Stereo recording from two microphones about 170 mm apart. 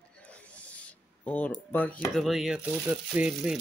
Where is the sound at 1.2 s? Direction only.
10° left (ahead or behind).